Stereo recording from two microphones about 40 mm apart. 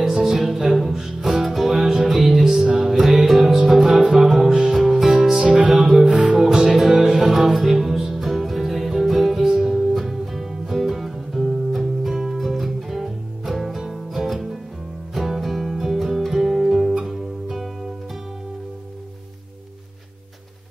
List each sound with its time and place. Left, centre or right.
0.1 s music: centre
5.4 s music: right
5.7 s music: centre